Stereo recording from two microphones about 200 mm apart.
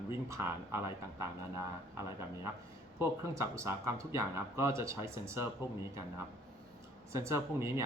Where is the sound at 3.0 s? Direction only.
15° right (ahead or behind).